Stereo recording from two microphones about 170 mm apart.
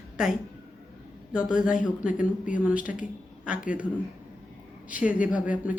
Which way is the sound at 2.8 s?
50° left (ahead or behind).